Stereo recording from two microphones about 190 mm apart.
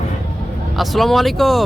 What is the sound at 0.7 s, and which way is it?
Speech, centre (ahead or behind).